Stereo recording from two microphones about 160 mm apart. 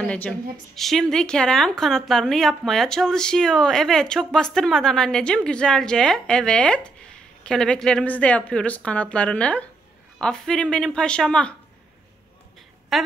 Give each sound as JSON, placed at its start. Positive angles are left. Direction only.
{"t": 0.0, "sound": "a woman's voice", "side_deg": 5}
{"t": 12.9, "sound": "a woman's voice", "side_deg": 0}